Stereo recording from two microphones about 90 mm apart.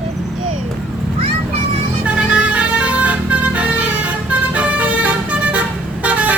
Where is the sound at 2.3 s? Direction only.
10° right (ahead or behind).